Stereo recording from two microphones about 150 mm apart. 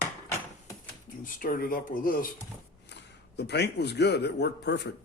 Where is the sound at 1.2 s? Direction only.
65° left (ahead or behind).